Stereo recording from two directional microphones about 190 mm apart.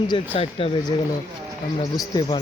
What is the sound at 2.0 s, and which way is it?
Speech, 20° left (ahead or behind).